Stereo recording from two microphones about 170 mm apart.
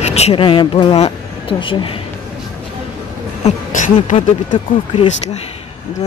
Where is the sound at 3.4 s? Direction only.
45° left (ahead or behind).